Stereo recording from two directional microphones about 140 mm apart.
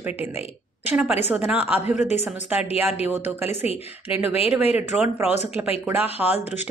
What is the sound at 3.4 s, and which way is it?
Speech, 50° left (ahead or behind).